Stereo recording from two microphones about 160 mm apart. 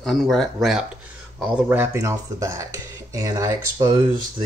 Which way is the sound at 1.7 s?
15° right (ahead or behind).